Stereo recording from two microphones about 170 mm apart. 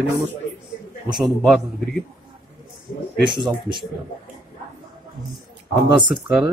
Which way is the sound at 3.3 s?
25° right (ahead or behind).